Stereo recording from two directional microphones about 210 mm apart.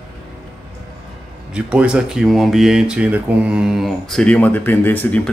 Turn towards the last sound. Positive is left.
turn(degrees=10)  # may be behind; listen again after turning